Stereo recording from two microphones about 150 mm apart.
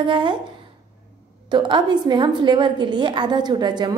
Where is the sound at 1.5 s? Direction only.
30° right (ahead or behind).